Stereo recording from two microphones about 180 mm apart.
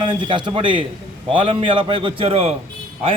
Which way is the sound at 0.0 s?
25° right (ahead or behind).